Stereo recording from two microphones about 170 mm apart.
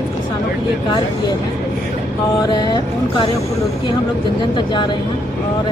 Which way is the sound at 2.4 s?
25° left (ahead or behind).